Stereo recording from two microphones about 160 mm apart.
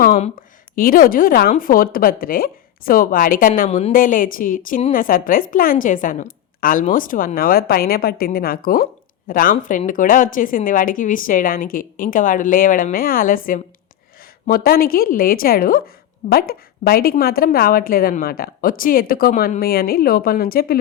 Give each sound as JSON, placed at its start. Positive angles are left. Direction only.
{"t": 0.3, "sound": "a woman's voice", "side_deg": 60}
{"t": 3.7, "sound": "a woman's voice", "side_deg": 40}
{"t": 3.9, "sound": "a woman's voice", "side_deg": 60}